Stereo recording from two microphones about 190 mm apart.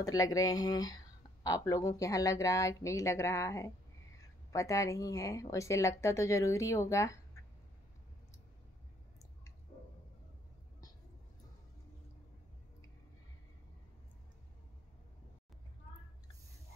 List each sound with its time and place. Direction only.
0.0 s speech: 20° left (ahead or behind)